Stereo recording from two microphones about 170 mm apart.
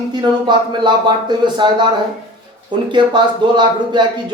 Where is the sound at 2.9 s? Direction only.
25° right (ahead or behind).